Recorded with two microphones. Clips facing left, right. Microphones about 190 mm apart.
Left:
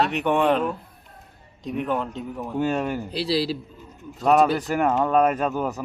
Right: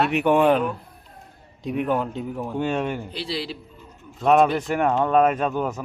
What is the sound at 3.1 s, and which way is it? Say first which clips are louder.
Speech: left 6 dB; 35° left (ahead or behind).